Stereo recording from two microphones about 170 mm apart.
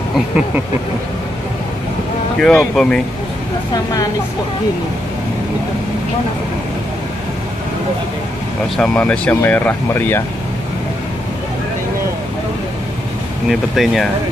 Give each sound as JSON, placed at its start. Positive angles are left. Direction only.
{"t": 2.4, "sound": "speech", "side_deg": 5}
{"t": 3.7, "sound": "a woman's voice", "side_deg": 25}
{"t": 8.7, "sound": "speech", "side_deg": 5}
{"t": 13.5, "sound": "speech", "side_deg": 0}